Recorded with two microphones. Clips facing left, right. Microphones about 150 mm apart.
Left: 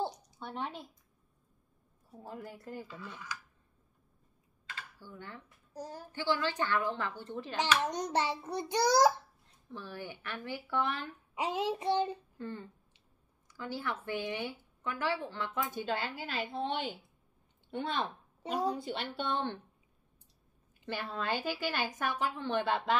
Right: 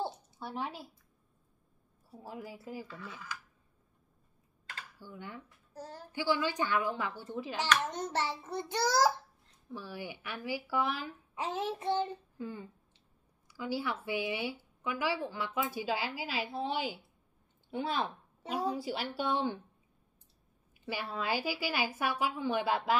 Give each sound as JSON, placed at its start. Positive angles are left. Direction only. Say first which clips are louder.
{"t": 0.4, "sound": "speech", "louder": "right 1 dB", "side_deg": -5}
{"t": 2.0, "sound": "speech", "louder": "even", "side_deg": -5}
{"t": 4.9, "sound": "speech", "louder": "right 2 dB", "side_deg": -15}
{"t": 5.7, "sound": "a child's voice", "louder": "left 3 dB", "side_deg": 15}
{"t": 6.1, "sound": "speech", "louder": "right 1 dB", "side_deg": -10}
{"t": 7.8, "sound": "a child's voice", "louder": "left 2 dB", "side_deg": 15}
{"t": 9.7, "sound": "speech", "louder": "right 1 dB", "side_deg": -10}
{"t": 11.3, "sound": "a child's voice", "louder": "left 2 dB", "side_deg": 15}
{"t": 12.4, "sound": "speech", "louder": "even", "side_deg": -10}
{"t": 20.8, "sound": "speech", "louder": "even", "side_deg": -5}